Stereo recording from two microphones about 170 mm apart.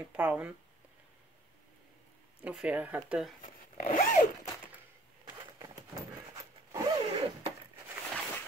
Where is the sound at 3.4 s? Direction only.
50° left (ahead or behind).